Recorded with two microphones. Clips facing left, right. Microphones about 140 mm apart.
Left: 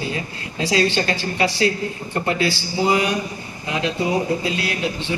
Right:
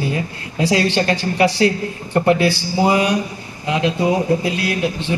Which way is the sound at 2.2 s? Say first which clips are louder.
Right 6 dB; 55° right (ahead or behind).